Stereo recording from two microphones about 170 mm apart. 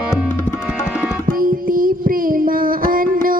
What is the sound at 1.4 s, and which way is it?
Child singing, 55° right (ahead or behind).